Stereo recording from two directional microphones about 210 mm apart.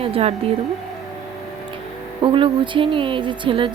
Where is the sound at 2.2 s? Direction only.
25° right (ahead or behind).